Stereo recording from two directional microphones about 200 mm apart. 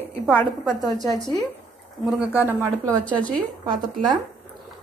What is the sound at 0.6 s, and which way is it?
Speech, 20° right (ahead or behind).